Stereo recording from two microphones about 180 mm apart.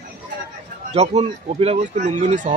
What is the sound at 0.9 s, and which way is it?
Speech, 35° right (ahead or behind).